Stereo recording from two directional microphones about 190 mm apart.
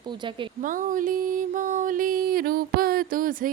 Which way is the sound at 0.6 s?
45° right (ahead or behind).